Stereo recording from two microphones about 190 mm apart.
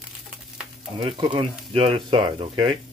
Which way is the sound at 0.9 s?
25° right (ahead or behind).